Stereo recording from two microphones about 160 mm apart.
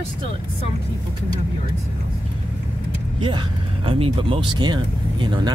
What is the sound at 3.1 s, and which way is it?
Speech, 30° right (ahead or behind).